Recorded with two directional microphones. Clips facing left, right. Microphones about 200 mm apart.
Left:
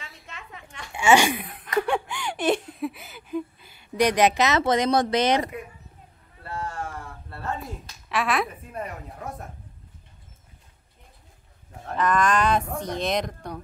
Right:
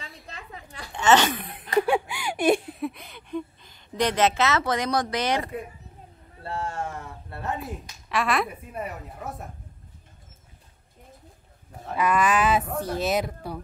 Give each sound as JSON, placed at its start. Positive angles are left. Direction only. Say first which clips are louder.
{"t": 0.3, "sound": "a sound", "louder": "even", "side_deg": -35}
{"t": 0.9, "sound": "speech", "louder": "left 1 dB", "side_deg": 10}
{"t": 1.8, "sound": "speech", "louder": "right 2 dB", "side_deg": -10}
{"t": 2.8, "sound": "a woman's voice", "louder": "left 1 dB", "side_deg": 5}
{"t": 6.4, "sound": "a sound", "louder": "right 2 dB", "side_deg": -25}
{"t": 8.1, "sound": "speech", "louder": "even", "side_deg": 0}
{"t": 11.8, "sound": "speech", "louder": "even", "side_deg": -10}